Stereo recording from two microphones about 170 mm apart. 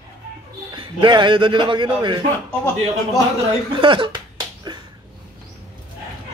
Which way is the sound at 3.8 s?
30° right (ahead or behind).